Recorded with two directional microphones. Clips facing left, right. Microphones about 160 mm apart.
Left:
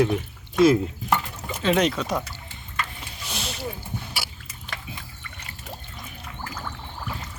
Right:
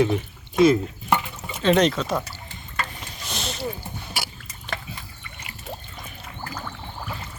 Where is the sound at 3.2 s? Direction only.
10° left (ahead or behind).